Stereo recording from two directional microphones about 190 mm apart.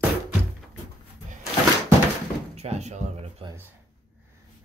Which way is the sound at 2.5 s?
35° right (ahead or behind).